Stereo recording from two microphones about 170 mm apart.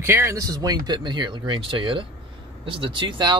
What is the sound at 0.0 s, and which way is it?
Speech, 15° right (ahead or behind).